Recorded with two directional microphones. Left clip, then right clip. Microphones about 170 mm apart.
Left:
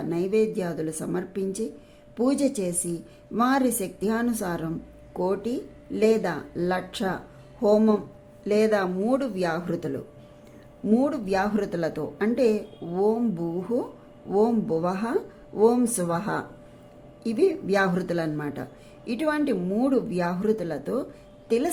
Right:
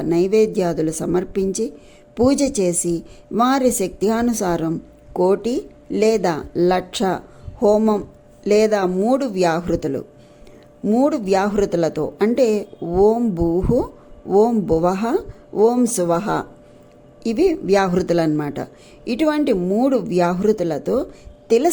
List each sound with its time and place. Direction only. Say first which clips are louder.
0.0 s speech: right 8 dB; 30° right (ahead or behind)